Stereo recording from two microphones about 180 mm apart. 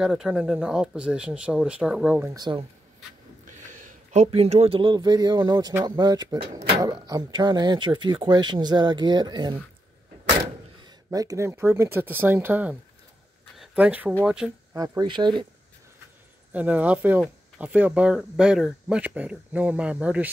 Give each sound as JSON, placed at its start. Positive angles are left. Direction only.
{"t": 0.0, "sound": "speech", "side_deg": -5}
{"t": 2.3, "sound": "speech", "side_deg": -25}
{"t": 3.4, "sound": "speech", "side_deg": -40}
{"t": 10.8, "sound": "speech", "side_deg": -20}
{"t": 14.7, "sound": "speech", "side_deg": -20}
{"t": 16.5, "sound": "speech", "side_deg": -10}